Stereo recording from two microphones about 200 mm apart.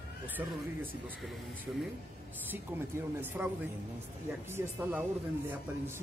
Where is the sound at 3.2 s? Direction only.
10° right (ahead or behind).